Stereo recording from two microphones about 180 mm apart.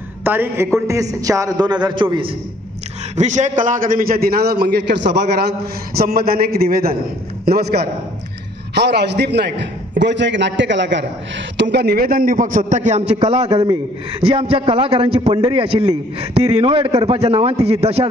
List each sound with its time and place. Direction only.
0.2 s a woman's voice: 10° right (ahead or behind); by 2.3 s 30° right (ahead or behind)
3.2 s a man's voice: 40° right (ahead or behind)